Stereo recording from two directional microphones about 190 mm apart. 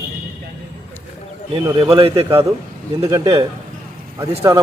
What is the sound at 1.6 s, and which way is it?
A man's voice, 25° right (ahead or behind).